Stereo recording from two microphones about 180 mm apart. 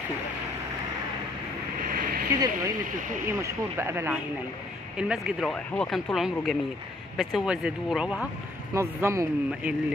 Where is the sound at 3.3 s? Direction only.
15° right (ahead or behind).